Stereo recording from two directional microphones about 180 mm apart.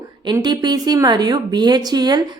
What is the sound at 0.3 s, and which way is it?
Speech, 20° right (ahead or behind).